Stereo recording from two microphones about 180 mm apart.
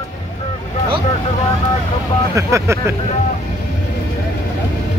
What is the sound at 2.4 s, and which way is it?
Speech, 15° right (ahead or behind).